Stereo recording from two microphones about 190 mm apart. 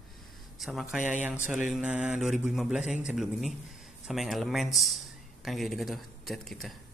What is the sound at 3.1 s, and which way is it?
Speech, centre (ahead or behind).